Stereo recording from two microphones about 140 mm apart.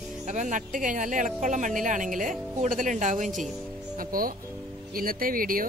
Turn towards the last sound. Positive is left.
turn(degrees=-90)